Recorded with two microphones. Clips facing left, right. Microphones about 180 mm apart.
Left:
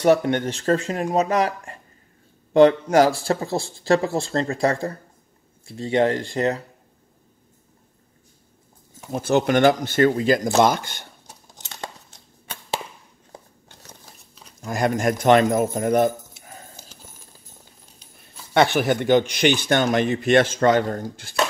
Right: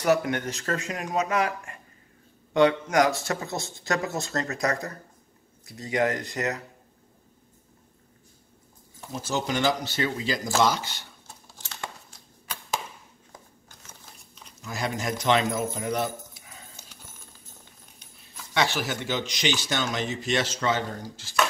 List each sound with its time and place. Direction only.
0.0 s speech: 30° left (ahead or behind)
9.1 s speech: 60° left (ahead or behind)
11.8 s a sound: 25° left (ahead or behind)
14.6 s speech: 50° left (ahead or behind)
18.5 s speech: 55° left (ahead or behind)